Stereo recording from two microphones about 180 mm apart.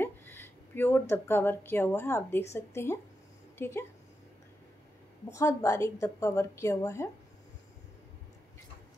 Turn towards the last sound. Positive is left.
turn(degrees=15)  # may be behind; listen again after turning